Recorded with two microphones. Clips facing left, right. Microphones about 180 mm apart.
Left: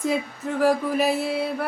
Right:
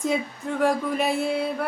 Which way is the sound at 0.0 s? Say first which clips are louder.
Left 1 dB; centre (ahead or behind).